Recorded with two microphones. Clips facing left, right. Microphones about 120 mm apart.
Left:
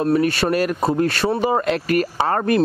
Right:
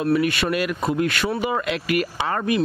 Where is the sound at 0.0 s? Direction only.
35° left (ahead or behind).